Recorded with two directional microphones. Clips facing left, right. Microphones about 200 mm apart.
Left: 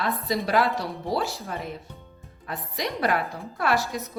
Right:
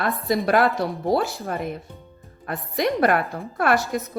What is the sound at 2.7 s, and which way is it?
Speech, 55° right (ahead or behind).